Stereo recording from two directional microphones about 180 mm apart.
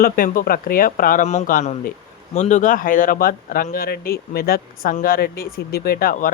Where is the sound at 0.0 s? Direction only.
50° left (ahead or behind).